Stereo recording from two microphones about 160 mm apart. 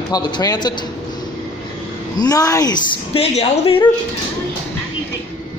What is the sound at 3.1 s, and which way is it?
Speech, 40° left (ahead or behind).